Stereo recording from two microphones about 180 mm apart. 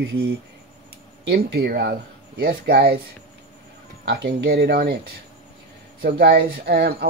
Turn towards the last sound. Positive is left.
turn(degrees=-60)  # may be behind; listen again after turning